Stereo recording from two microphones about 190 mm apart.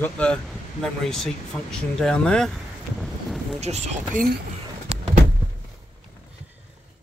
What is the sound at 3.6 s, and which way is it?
Speech, 35° right (ahead or behind).